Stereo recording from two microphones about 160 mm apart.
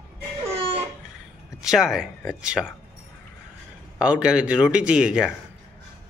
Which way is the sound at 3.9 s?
5° right (ahead or behind).